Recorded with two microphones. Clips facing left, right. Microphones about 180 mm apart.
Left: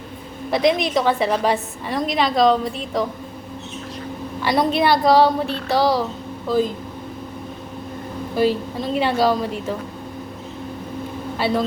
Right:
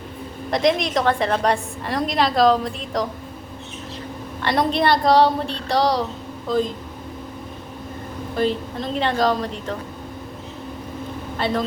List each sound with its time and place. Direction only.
0.5 s a woman's voice: 5° left (ahead or behind)
4.4 s a woman's voice: 5° left (ahead or behind)
8.4 s a woman's voice: 5° left (ahead or behind)
11.3 s a woman's voice: 5° left (ahead or behind)